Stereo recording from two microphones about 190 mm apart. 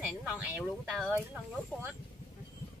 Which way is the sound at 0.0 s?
Centre (ahead or behind).